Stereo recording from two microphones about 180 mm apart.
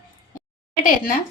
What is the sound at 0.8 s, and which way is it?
Speech, 50° left (ahead or behind).